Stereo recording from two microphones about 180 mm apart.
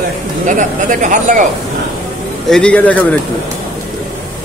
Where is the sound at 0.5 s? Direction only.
45° right (ahead or behind).